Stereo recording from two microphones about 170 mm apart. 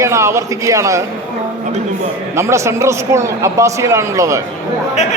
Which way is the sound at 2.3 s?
15° right (ahead or behind).